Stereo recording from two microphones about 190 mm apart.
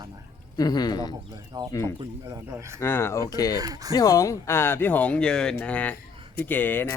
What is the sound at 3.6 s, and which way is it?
Speech, 20° right (ahead or behind).